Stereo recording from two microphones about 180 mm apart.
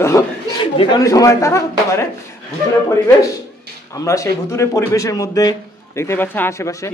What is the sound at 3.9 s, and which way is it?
A man's voice, 15° left (ahead or behind).